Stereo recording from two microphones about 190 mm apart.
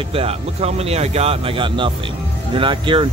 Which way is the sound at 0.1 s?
30° right (ahead or behind).